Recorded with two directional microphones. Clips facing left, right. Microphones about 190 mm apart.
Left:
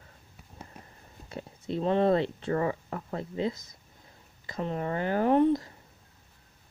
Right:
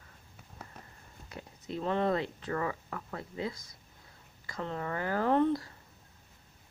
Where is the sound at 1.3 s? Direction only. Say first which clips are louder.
Left 6 dB; 25° left (ahead or behind).